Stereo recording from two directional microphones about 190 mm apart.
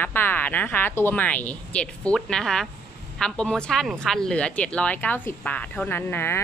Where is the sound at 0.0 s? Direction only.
10° left (ahead or behind).